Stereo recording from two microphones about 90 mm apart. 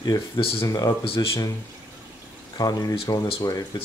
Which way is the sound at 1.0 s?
90° left.